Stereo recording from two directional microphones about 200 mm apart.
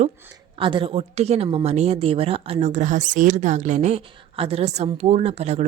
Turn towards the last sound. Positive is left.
turn(degrees=-30)  # may be behind; listen again after turning